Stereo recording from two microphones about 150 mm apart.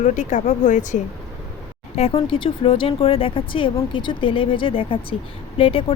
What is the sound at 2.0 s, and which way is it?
Speech, 40° left (ahead or behind).